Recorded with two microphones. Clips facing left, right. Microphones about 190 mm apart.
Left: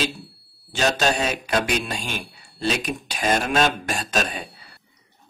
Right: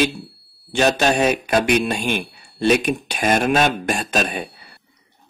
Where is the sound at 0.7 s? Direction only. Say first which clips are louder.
Right 4 dB; 60° right (ahead or behind).